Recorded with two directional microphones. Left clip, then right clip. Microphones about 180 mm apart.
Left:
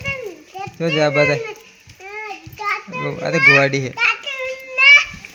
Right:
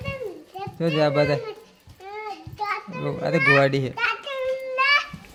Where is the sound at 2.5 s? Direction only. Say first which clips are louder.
Left 5 dB; 50° left (ahead or behind).